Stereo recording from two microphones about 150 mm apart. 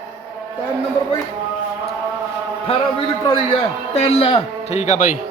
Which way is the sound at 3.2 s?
35° left (ahead or behind).